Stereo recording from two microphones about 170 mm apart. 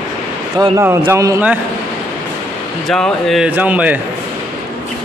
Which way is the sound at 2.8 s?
Centre (ahead or behind).